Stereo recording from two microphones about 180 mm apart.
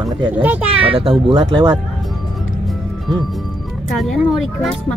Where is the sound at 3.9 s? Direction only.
Centre (ahead or behind).